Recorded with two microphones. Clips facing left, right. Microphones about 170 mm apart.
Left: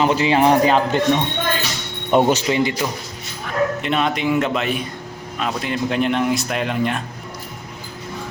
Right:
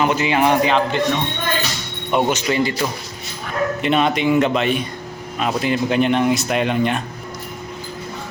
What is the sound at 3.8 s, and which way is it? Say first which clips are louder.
Speech: right 3 dB; centre (ahead or behind).